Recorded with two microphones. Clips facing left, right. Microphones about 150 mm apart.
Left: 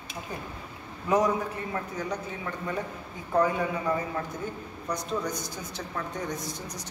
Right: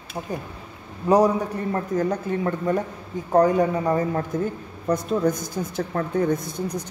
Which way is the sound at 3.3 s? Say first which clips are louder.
Right 7 dB; 40° right (ahead or behind).